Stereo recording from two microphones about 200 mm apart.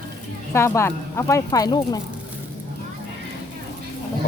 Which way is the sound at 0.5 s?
15° left (ahead or behind).